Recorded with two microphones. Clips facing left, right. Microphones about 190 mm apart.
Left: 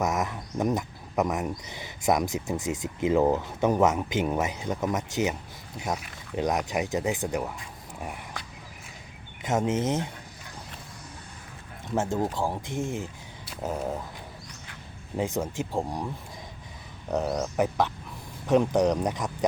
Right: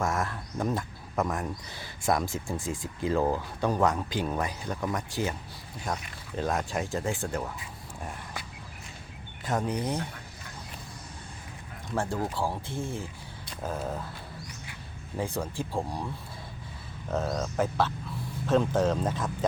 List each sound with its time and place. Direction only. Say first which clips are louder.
0.0 s speech: left 2 dB; 20° left (ahead or behind)
9.4 s speech: left 4 dB; 20° left (ahead or behind)
11.9 s speech: left 3 dB; 20° left (ahead or behind)
15.1 s speech: left 3 dB; 20° left (ahead or behind)
17.1 s speech: left 3 dB; 15° left (ahead or behind)